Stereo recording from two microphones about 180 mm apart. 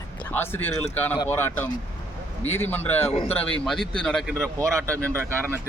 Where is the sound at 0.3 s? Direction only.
10° left (ahead or behind).